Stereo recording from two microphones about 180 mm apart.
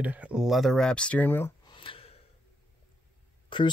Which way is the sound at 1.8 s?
30° left (ahead or behind).